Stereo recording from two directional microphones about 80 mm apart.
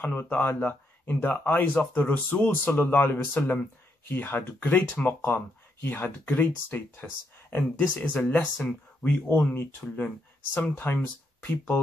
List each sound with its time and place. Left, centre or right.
0.0 s speech: left